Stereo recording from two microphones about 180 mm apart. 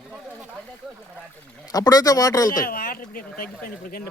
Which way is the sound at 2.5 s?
50° left (ahead or behind).